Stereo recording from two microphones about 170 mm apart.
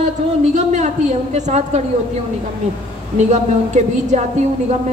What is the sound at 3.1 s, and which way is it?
A woman's voice, 45° right (ahead or behind).